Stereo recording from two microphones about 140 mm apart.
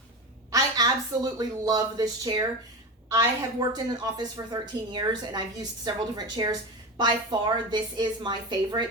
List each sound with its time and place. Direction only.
0.5 s a woman's voice: 25° right (ahead or behind)